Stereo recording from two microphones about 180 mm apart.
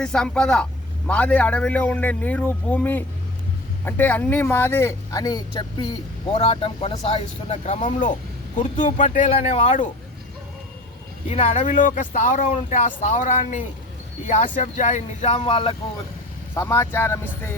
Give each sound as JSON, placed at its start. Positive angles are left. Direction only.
{"t": 0.0, "sound": "speech", "side_deg": 5}
{"t": 11.3, "sound": "speech", "side_deg": 40}
{"t": 15.4, "sound": "speech", "side_deg": 30}
{"t": 16.6, "sound": "speech", "side_deg": 15}